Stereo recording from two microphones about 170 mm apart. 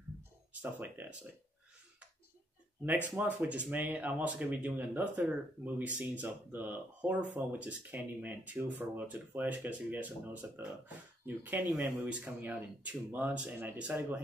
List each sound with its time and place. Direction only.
0.5 s speech: 10° right (ahead or behind)
3.2 s speech: 10° right (ahead or behind)